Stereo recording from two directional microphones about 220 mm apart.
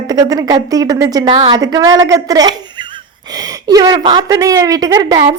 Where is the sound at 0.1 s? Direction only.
15° right (ahead or behind).